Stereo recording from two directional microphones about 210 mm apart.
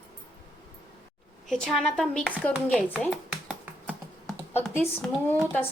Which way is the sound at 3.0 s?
5° right (ahead or behind).